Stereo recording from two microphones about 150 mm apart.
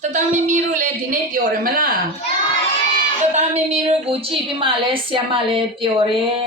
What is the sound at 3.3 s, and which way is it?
Speech, 50° right (ahead or behind).